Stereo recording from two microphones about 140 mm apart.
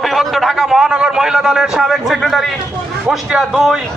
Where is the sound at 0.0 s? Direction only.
Centre (ahead or behind).